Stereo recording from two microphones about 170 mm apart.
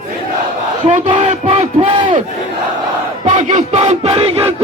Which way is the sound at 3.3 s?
45° right (ahead or behind).